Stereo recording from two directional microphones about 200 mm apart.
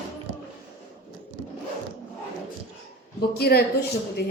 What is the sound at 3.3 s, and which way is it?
Speech, 50° left (ahead or behind).